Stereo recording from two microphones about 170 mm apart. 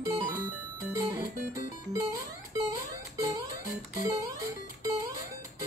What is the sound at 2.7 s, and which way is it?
Music, 20° right (ahead or behind).